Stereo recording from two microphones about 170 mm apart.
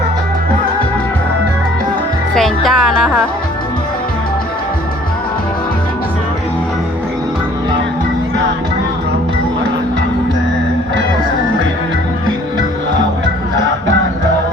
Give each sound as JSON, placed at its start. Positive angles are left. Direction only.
{"t": 2.3, "sound": "speech", "side_deg": 0}